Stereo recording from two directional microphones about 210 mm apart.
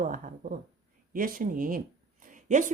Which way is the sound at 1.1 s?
40° right (ahead or behind).